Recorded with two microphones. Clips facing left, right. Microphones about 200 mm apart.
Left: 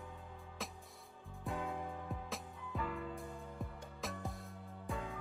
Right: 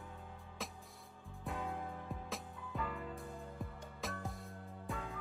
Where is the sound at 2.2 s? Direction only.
Centre (ahead or behind).